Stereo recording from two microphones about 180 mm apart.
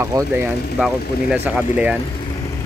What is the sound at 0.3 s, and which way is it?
Speech, 5° right (ahead or behind).